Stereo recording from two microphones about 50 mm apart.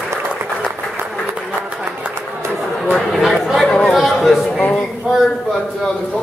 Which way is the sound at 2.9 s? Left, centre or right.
Centre.